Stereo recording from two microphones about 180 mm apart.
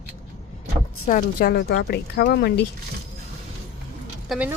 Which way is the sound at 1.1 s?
55° left (ahead or behind).